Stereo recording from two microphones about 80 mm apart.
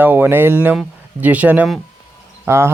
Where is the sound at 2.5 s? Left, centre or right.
Right.